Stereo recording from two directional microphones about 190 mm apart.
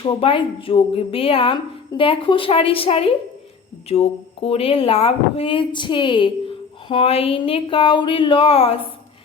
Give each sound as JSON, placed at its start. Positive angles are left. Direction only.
{"t": 0.0, "sound": "a woman's voice", "side_deg": 30}